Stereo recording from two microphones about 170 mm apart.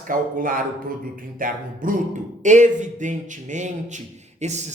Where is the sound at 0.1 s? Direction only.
55° right (ahead or behind).